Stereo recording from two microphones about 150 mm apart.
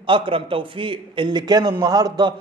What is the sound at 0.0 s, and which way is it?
A man's voice, 35° right (ahead or behind).